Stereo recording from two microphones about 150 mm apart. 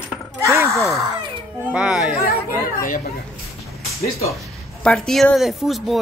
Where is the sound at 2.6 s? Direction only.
65° left (ahead or behind).